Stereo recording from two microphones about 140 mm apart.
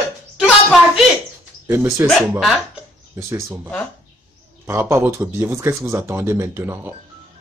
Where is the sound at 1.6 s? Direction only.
15° right (ahead or behind).